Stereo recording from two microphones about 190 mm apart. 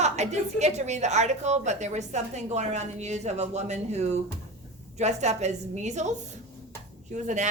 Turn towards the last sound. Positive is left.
turn(degrees=-40)  # may be behind; listen again after turning